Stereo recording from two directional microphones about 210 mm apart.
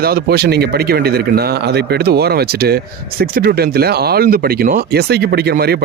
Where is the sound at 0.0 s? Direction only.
45° right (ahead or behind).